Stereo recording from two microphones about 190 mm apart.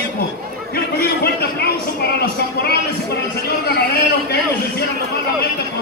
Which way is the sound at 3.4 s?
55° left (ahead or behind).